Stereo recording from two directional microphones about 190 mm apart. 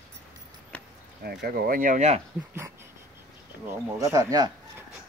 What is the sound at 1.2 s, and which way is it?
Speech, 55° right (ahead or behind).